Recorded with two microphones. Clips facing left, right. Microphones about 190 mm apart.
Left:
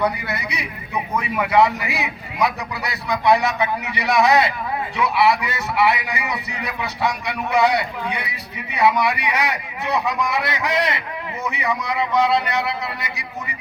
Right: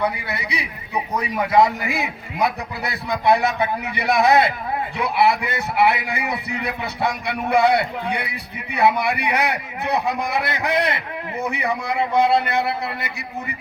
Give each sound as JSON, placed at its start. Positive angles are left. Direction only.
{"t": 0.3, "sound": "a man's voice", "side_deg": -30}